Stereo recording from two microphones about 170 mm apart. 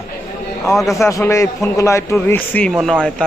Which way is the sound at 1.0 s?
15° left (ahead or behind).